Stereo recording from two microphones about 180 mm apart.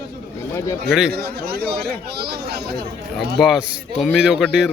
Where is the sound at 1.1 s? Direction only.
60° right (ahead or behind).